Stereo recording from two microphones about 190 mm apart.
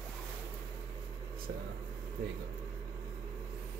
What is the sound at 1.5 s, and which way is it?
Speech, 60° right (ahead or behind).